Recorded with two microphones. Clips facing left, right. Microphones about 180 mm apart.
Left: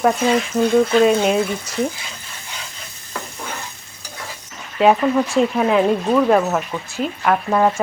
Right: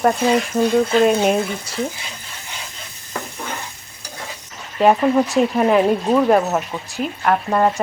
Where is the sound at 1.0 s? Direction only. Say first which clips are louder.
Even; centre (ahead or behind).